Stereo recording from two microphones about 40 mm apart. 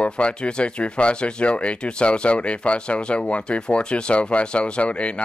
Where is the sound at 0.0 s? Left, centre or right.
Left.